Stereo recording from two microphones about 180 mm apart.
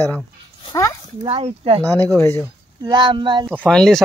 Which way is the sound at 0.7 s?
15° left (ahead or behind).